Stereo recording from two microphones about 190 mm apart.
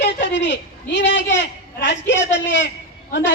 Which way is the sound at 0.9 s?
70° left (ahead or behind).